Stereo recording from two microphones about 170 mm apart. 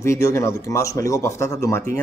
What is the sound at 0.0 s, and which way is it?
A man's voice, 15° left (ahead or behind).